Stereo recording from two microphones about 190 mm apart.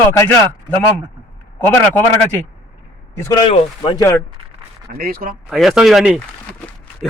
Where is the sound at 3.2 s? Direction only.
20° left (ahead or behind).